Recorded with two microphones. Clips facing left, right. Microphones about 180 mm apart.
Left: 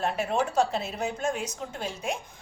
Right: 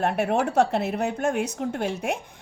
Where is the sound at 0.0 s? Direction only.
60° right (ahead or behind).